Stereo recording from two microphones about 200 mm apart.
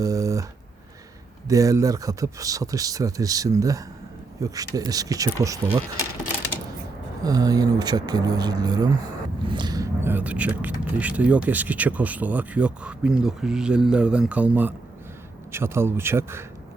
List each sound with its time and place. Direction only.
0.0 s a sound: 15° right (ahead or behind)
1.5 s speech: 15° right (ahead or behind)
7.3 s speech: 20° right (ahead or behind)